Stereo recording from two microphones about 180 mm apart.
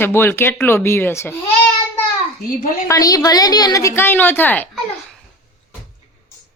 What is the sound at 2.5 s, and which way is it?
Speech, 45° left (ahead or behind).